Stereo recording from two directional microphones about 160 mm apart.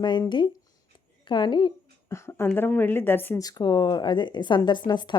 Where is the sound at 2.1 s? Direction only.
15° left (ahead or behind).